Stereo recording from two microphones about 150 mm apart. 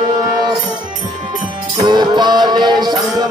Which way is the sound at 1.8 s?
30° right (ahead or behind).